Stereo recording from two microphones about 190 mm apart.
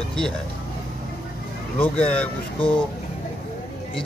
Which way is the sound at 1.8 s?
5° left (ahead or behind).